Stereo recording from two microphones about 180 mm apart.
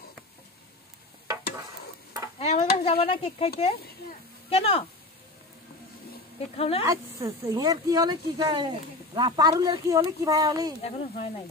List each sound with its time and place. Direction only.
2.3 s stir: 35° left (ahead or behind)
6.5 s stir: 35° left (ahead or behind)
6.8 s speech: 15° right (ahead or behind)
10.8 s stir: 35° left (ahead or behind)